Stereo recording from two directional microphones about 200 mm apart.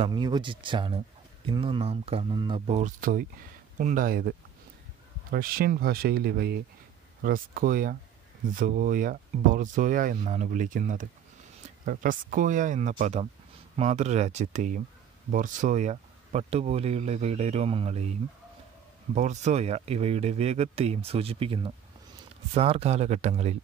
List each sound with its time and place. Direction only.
0.0 s speech: 20° right (ahead or behind)
2.6 s speech: 35° right (ahead or behind)
19.1 s speech: 35° right (ahead or behind)